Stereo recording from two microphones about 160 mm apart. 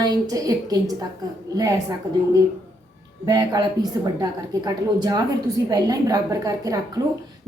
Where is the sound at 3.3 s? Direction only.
25° right (ahead or behind).